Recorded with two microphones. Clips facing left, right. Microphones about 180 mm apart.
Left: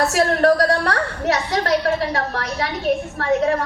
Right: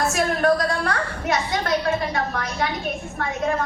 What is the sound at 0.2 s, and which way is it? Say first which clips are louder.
A woman's voice: left 4 dB; 70° left (ahead or behind).